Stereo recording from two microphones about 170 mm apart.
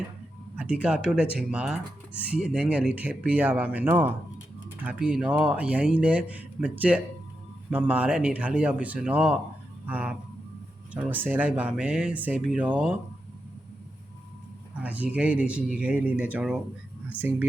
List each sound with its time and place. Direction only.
0.5 s speech: 10° right (ahead or behind)
14.8 s speech: 10° right (ahead or behind)